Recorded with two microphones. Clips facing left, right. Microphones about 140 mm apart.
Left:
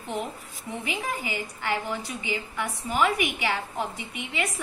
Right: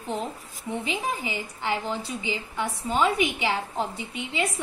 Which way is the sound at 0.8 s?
20° right (ahead or behind).